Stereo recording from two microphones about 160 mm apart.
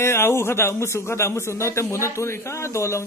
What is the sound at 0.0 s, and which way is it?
A man's voice, 15° left (ahead or behind).